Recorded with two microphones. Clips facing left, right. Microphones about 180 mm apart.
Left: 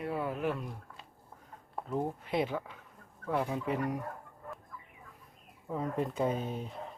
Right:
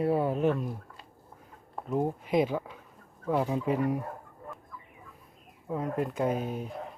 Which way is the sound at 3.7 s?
30° right (ahead or behind).